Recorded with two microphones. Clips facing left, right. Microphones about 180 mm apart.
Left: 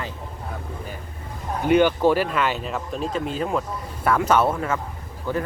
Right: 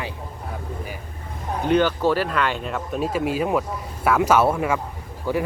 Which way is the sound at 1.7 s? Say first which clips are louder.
Left 2 dB; 10° left (ahead or behind).